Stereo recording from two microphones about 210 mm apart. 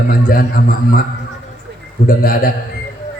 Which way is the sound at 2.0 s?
40° left (ahead or behind).